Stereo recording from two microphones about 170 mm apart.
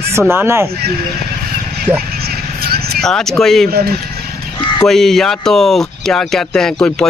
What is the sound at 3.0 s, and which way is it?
Speech, 5° left (ahead or behind).